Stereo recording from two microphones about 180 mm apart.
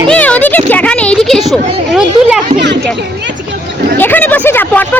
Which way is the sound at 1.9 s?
5° right (ahead or behind).